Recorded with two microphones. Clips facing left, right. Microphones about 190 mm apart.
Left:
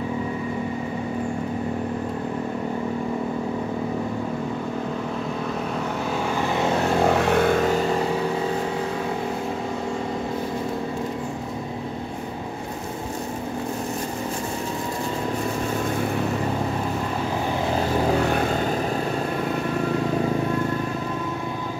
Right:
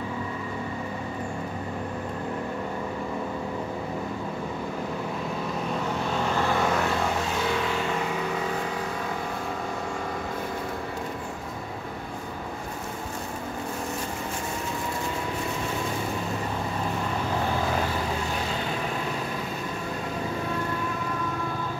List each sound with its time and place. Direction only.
6.3 s vehicle: 15° left (ahead or behind)
7.2 s vehicle: 55° left (ahead or behind); by 8.1 s 35° left (ahead or behind)
18.2 s vehicle: 60° left (ahead or behind)